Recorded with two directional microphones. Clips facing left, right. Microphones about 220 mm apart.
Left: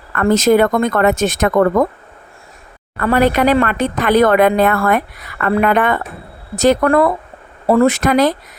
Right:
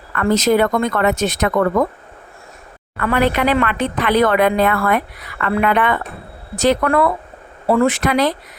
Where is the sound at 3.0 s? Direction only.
40° left (ahead or behind).